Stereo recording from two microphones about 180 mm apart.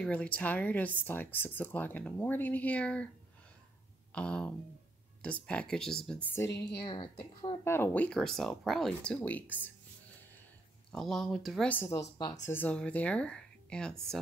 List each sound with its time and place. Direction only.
0.0 s speech: 5° left (ahead or behind)
4.1 s speech: 5° left (ahead or behind)
6.5 s a woman's voice: 70° left (ahead or behind)
6.8 s a woman's voice: 25° left (ahead or behind)
7.6 s speech: 10° left (ahead or behind)
10.9 s speech: centre (ahead or behind)